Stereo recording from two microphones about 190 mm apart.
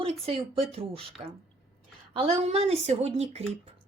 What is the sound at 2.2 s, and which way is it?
Speech, 30° right (ahead or behind).